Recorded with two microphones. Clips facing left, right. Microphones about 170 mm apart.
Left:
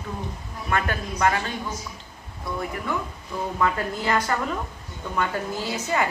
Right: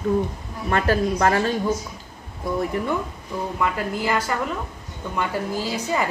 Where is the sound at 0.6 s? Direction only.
35° right (ahead or behind).